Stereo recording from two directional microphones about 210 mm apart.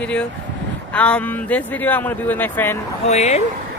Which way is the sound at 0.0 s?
5° left (ahead or behind).